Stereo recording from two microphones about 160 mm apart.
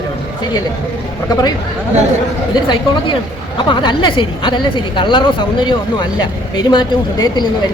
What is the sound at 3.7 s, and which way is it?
A woman's voice, 30° left (ahead or behind).